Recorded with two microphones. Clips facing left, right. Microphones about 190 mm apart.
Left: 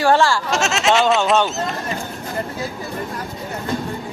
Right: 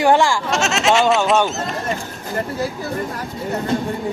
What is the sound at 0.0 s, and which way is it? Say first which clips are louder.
Speech: right 1 dB; 15° right (ahead or behind).